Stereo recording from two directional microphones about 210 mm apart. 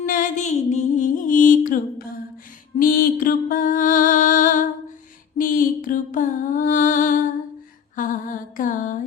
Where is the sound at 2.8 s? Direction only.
45° left (ahead or behind).